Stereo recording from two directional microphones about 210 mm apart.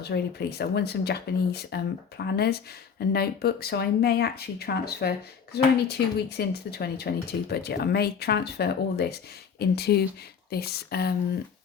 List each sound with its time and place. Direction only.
0.0 s speech: 50° left (ahead or behind)